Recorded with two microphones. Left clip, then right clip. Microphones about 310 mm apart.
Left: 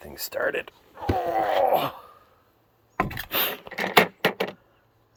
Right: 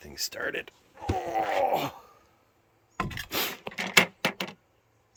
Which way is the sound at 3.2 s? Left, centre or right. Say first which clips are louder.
Left 4 dB; centre.